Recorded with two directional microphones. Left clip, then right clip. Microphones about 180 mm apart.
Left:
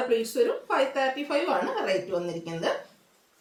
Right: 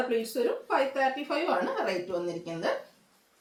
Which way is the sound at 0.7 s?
15° left (ahead or behind).